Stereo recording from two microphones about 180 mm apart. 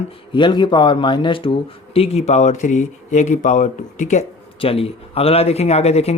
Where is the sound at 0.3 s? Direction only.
25° left (ahead or behind).